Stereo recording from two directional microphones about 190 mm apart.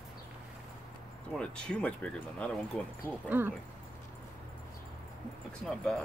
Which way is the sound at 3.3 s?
10° right (ahead or behind).